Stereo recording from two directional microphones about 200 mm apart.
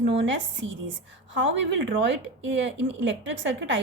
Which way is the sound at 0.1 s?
70° right (ahead or behind).